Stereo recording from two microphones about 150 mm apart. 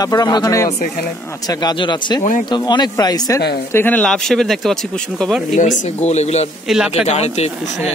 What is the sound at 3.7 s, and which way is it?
Speech, 15° left (ahead or behind).